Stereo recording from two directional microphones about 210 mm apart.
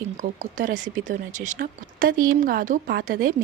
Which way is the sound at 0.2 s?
40° right (ahead or behind).